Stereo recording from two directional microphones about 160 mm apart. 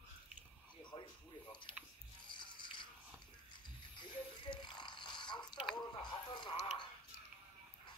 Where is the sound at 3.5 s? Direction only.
30° left (ahead or behind).